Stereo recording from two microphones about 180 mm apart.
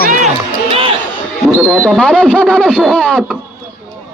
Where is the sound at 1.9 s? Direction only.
Centre (ahead or behind).